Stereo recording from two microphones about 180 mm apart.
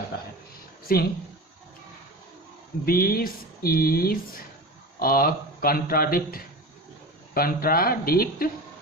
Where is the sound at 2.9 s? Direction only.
55° left (ahead or behind).